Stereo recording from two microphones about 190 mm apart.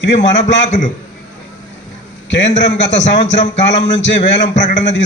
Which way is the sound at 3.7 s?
70° left (ahead or behind).